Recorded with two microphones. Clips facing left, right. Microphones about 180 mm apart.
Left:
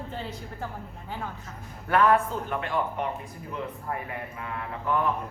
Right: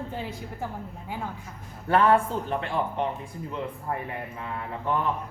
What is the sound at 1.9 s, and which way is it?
Speech, 30° right (ahead or behind).